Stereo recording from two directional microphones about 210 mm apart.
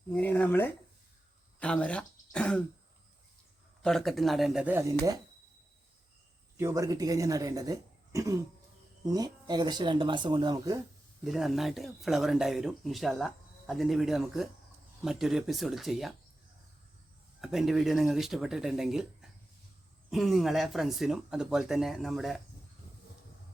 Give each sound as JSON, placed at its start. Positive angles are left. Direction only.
{"t": 0.1, "sound": "speech", "side_deg": 10}
{"t": 3.8, "sound": "speech", "side_deg": 0}
{"t": 6.6, "sound": "speech", "side_deg": -15}
{"t": 11.3, "sound": "speech", "side_deg": 0}
{"t": 17.4, "sound": "speech", "side_deg": 0}